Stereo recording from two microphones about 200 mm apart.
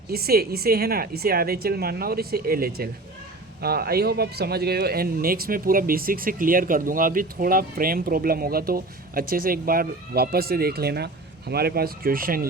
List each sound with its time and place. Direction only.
0.1 s speech: 50° right (ahead or behind)